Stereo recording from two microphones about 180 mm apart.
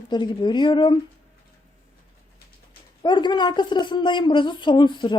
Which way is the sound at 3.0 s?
25° left (ahead or behind).